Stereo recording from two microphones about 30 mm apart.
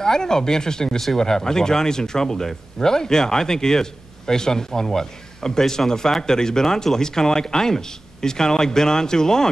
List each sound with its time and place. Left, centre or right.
0.0 s a man's voice: centre